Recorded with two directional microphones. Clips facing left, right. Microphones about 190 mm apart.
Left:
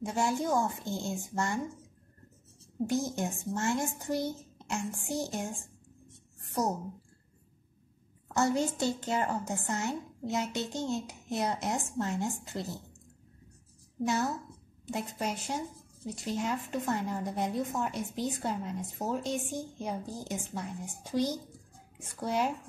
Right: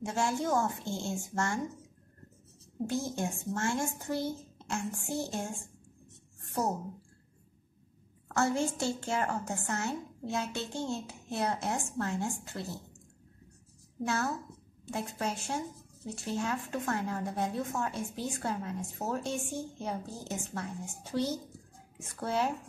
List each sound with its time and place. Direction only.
0.1 s speech: 15° left (ahead or behind)
2.9 s speech: 15° left (ahead or behind)
8.4 s a woman's voice: 15° left (ahead or behind)
14.0 s speech: 15° left (ahead or behind)